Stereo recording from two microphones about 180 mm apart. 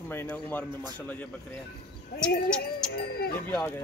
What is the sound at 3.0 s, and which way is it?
Speech, 60° left (ahead or behind).